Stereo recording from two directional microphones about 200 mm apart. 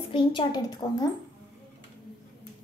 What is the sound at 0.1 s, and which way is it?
Speech, 25° left (ahead or behind).